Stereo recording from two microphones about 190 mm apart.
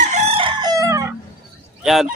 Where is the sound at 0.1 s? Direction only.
30° right (ahead or behind).